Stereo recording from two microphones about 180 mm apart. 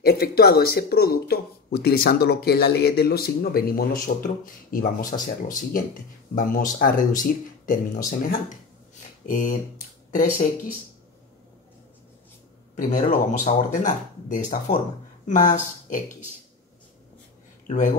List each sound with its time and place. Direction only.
0.0 s speech: 60° left (ahead or behind)
13.1 s speech: 45° left (ahead or behind)
17.6 s speech: 45° left (ahead or behind)